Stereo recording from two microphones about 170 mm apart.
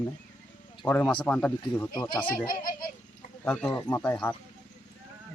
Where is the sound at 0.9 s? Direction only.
10° left (ahead or behind).